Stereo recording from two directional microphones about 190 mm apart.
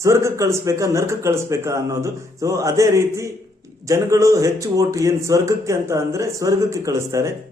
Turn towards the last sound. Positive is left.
turn(degrees=-15)  # may be behind; listen again after turning